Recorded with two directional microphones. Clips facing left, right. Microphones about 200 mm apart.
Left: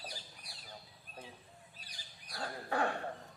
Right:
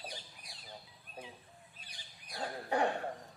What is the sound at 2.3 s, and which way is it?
Dog, 20° right (ahead or behind).